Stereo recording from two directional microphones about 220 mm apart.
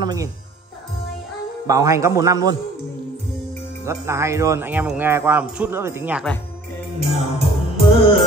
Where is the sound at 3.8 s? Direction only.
10° right (ahead or behind).